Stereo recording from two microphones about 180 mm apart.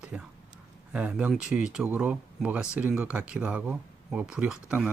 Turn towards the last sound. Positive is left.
turn(degrees=-10)  # may be behind; listen again after turning